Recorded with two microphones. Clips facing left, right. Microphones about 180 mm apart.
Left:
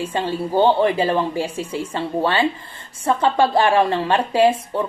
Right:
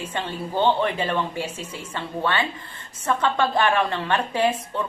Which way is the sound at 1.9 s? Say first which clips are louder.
Left 4 dB; 35° left (ahead or behind).